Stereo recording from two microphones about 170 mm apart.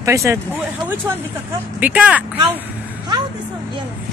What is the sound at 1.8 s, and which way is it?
Speech, 10° right (ahead or behind).